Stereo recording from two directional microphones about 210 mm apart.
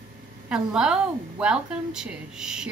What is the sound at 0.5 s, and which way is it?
A woman's voice, 5° right (ahead or behind).